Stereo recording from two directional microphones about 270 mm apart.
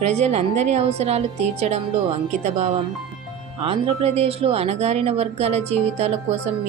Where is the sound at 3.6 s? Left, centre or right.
Right.